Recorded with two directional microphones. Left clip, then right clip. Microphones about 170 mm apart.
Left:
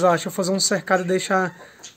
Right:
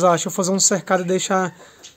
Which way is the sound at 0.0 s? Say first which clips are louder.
Right 2 dB; 25° right (ahead or behind).